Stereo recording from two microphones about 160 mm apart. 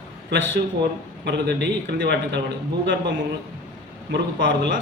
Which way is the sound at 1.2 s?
90° right.